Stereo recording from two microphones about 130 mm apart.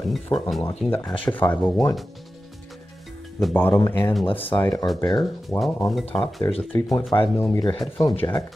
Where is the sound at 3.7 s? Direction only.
30° left (ahead or behind).